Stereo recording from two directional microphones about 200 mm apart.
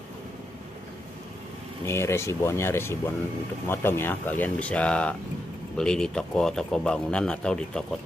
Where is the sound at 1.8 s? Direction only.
15° left (ahead or behind).